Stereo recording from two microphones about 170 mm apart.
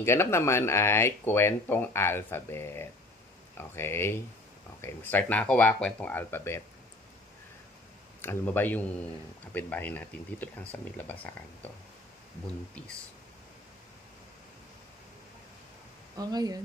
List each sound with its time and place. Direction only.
0.0 s speech: 15° left (ahead or behind)
8.2 s speech: 10° left (ahead or behind)
16.2 s speech: 25° right (ahead or behind)